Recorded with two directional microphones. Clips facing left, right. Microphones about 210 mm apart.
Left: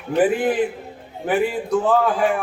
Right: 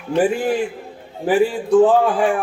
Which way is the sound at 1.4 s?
30° right (ahead or behind).